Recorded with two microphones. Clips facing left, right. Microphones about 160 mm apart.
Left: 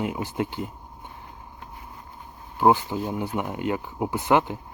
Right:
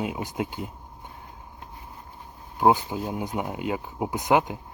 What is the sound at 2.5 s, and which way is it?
Speech, 15° right (ahead or behind).